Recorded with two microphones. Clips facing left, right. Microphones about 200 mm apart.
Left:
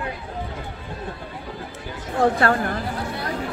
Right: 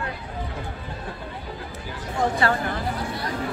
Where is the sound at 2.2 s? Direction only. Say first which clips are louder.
Left 4 dB; 55° left (ahead or behind).